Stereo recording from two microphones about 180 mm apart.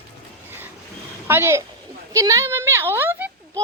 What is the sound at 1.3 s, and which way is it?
A woman's voice, 15° right (ahead or behind).